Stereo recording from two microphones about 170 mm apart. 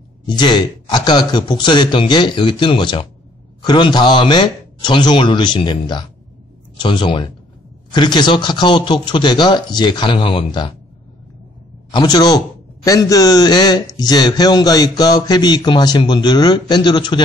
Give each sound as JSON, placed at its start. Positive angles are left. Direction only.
{"t": 0.3, "sound": "speech", "side_deg": 25}
{"t": 11.9, "sound": "speech", "side_deg": 25}